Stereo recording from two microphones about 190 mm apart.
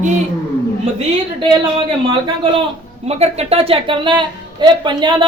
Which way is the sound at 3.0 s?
35° right (ahead or behind).